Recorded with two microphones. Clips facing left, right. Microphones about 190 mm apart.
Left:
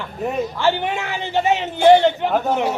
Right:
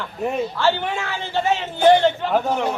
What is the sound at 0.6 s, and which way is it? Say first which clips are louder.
Speech: left 2 dB; 15° left (ahead or behind).